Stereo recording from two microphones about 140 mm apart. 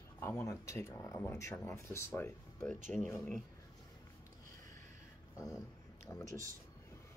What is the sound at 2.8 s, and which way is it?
Speech, 65° right (ahead or behind).